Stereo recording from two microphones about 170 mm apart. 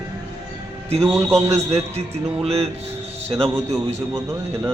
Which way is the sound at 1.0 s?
15° right (ahead or behind).